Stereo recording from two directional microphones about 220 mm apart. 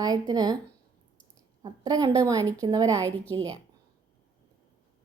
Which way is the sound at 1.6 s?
15° right (ahead or behind).